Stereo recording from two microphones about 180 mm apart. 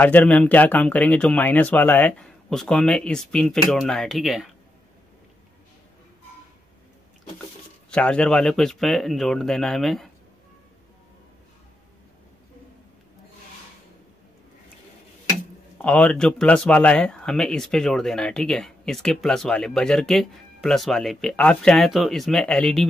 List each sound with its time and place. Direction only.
0.0 s speech: 10° left (ahead or behind)
7.9 s speech: 5° left (ahead or behind)
15.8 s speech: 5° left (ahead or behind)